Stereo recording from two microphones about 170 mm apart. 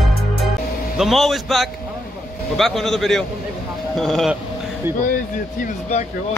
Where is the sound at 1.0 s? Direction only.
Centre (ahead or behind).